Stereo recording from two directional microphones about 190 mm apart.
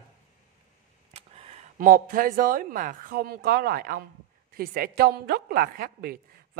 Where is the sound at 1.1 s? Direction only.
35° right (ahead or behind).